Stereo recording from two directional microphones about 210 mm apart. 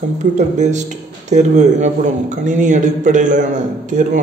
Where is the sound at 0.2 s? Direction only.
35° right (ahead or behind).